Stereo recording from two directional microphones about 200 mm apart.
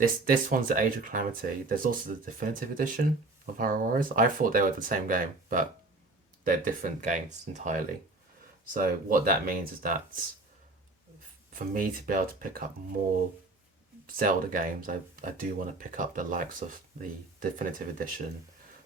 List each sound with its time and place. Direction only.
0.0 s speech: 45° right (ahead or behind)
11.5 s speech: 45° right (ahead or behind)
14.1 s speech: 45° right (ahead or behind)